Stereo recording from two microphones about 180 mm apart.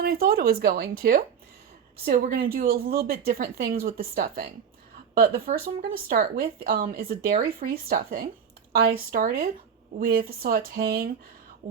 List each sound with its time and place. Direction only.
0.0 s speech: 55° right (ahead or behind)